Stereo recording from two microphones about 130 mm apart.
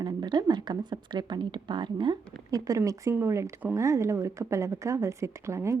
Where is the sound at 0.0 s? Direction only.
35° right (ahead or behind).